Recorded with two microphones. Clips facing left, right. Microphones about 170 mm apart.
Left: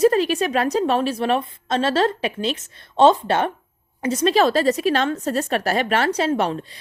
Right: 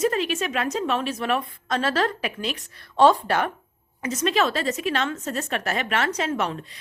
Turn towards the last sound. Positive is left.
turn(degrees=30)  # may be behind; listen again after turning